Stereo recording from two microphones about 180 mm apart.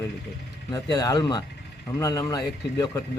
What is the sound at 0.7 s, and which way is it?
A man's voice, 20° left (ahead or behind).